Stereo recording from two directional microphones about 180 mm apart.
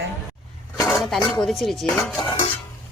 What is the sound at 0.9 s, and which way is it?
Speech, centre (ahead or behind).